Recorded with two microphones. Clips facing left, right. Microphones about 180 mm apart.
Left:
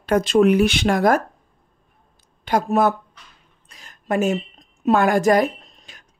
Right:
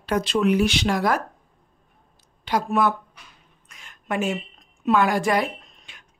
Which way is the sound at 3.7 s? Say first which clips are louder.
Left 5 dB; 40° left (ahead or behind).